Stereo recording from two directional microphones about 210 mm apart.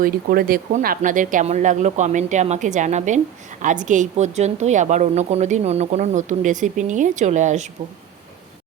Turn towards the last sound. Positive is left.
turn(degrees=-35)  # may be behind; listen again after turning